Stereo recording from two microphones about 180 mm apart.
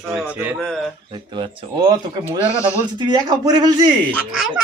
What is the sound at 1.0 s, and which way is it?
Speech, 30° right (ahead or behind).